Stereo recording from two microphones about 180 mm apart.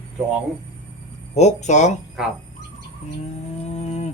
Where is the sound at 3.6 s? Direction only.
40° left (ahead or behind).